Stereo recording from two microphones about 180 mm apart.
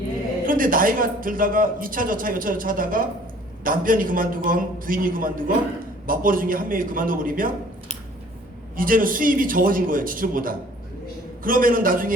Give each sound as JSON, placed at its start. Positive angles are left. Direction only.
{"t": 0.4, "sound": "speech", "side_deg": -50}
{"t": 8.7, "sound": "speech", "side_deg": -50}